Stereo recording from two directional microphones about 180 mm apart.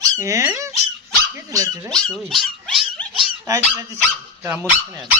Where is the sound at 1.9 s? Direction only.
5° left (ahead or behind).